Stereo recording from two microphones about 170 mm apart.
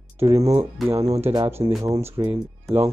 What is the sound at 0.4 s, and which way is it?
Speech, 40° right (ahead or behind).